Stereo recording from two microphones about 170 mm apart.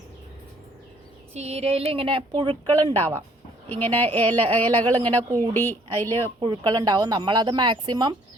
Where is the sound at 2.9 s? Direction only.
10° left (ahead or behind).